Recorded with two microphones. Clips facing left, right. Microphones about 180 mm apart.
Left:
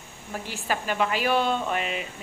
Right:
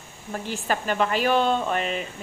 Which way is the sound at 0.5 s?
45° right (ahead or behind).